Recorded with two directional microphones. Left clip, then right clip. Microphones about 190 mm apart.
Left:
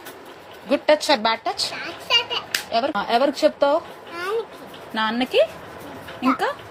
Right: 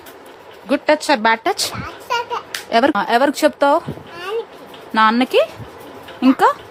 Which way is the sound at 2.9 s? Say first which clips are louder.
Right 4 dB; 35° right (ahead or behind).